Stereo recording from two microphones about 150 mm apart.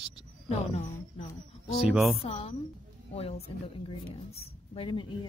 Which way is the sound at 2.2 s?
40° left (ahead or behind).